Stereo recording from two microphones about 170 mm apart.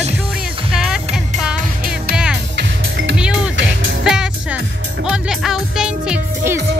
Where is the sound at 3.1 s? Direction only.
5° right (ahead or behind).